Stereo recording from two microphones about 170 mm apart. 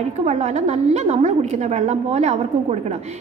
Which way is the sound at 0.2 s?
45° right (ahead or behind).